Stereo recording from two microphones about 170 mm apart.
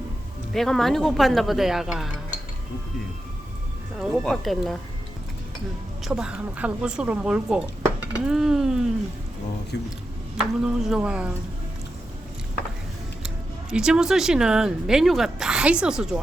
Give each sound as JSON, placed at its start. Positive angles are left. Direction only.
{"t": 0.5, "sound": "speech", "side_deg": 0}
{"t": 3.9, "sound": "speech", "side_deg": 0}
{"t": 6.1, "sound": "speech", "side_deg": -5}
{"t": 9.7, "sound": "speech", "side_deg": 80}
{"t": 10.6, "sound": "speech", "side_deg": -5}
{"t": 13.2, "sound": "speech", "side_deg": -5}